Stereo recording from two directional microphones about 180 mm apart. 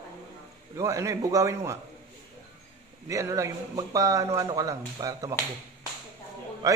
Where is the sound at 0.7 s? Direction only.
15° right (ahead or behind).